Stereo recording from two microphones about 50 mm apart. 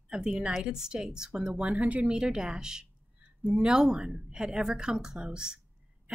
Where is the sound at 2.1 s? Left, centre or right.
Centre.